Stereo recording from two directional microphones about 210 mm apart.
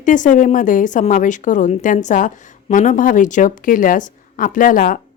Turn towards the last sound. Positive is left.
turn(degrees=40)  # may be behind; listen again after turning